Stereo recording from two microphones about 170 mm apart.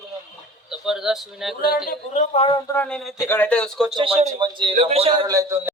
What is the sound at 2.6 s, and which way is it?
Speech, 20° left (ahead or behind).